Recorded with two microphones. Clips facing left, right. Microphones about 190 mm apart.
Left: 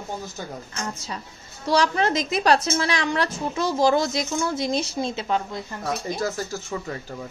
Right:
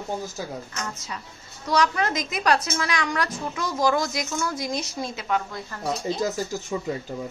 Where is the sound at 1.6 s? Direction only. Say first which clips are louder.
Left 2 dB; 30° left (ahead or behind).